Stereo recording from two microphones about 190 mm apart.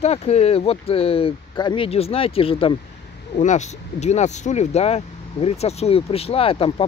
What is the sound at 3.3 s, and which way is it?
Speech, 40° left (ahead or behind).